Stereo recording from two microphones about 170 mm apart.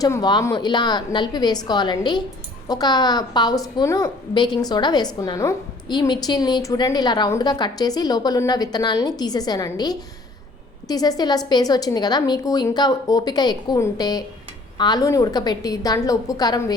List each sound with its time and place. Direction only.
0.0 s a woman's voice: 25° left (ahead or behind)